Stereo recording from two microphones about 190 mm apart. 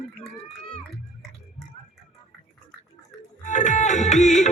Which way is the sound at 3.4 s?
40° left (ahead or behind).